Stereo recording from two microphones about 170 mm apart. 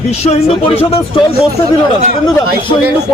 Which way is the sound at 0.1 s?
40° left (ahead or behind).